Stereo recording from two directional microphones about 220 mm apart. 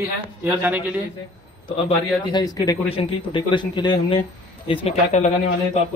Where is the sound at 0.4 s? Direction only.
10° right (ahead or behind).